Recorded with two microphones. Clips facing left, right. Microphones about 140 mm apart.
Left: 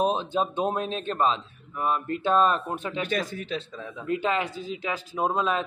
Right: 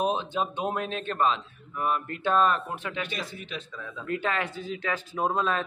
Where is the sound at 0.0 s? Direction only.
40° left (ahead or behind).